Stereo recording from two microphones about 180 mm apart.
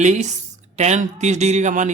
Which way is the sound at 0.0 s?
40° right (ahead or behind).